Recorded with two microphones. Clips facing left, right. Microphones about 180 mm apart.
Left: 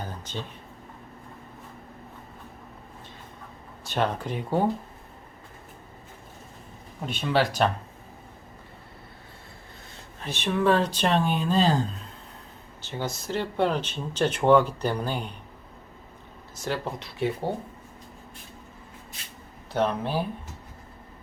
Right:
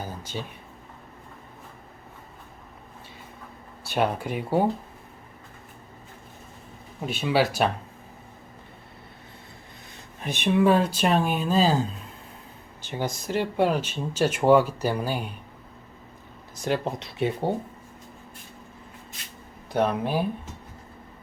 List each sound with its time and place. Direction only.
0.0 s a sound: 10° right (ahead or behind)
3.8 s speech: 10° right (ahead or behind)
7.0 s speech: 10° right (ahead or behind)
10.2 s speech: 15° right (ahead or behind)
16.6 s speech: 20° right (ahead or behind)
19.7 s speech: 10° right (ahead or behind)